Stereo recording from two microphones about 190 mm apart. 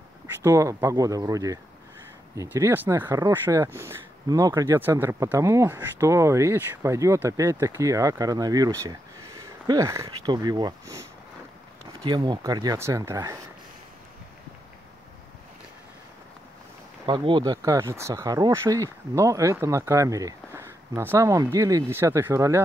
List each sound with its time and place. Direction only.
0.4 s speech: 15° right (ahead or behind)
17.0 s speech: 25° right (ahead or behind)
17.6 s speech: 15° right (ahead or behind)